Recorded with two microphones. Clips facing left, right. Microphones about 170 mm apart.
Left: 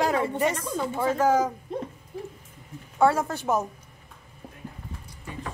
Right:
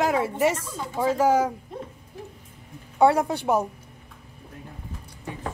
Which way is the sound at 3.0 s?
15° right (ahead or behind).